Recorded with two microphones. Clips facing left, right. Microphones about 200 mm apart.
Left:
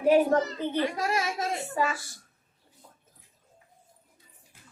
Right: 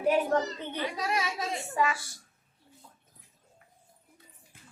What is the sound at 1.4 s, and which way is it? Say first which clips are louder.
Speech: left 1 dB; 35° left (ahead or behind).